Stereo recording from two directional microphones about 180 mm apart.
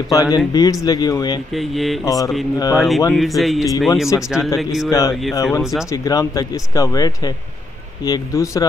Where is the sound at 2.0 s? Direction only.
20° left (ahead or behind).